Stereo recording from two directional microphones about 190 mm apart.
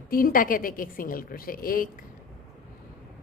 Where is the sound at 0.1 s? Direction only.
45° left (ahead or behind).